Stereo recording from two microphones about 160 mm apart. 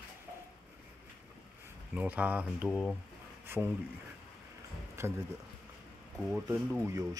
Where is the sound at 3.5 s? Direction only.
15° right (ahead or behind).